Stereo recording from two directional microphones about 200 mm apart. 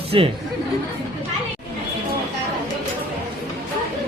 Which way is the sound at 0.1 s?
25° right (ahead or behind).